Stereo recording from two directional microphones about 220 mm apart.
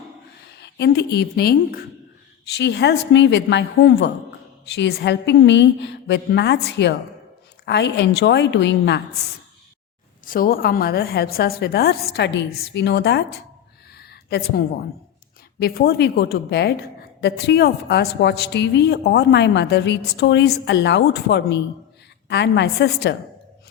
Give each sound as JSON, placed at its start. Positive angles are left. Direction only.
{"t": 0.6, "sound": "a woman's voice", "side_deg": 50}
{"t": 10.2, "sound": "a woman's voice", "side_deg": 40}
{"t": 13.9, "sound": "a sound", "side_deg": 45}
{"t": 15.5, "sound": "a woman's voice", "side_deg": 45}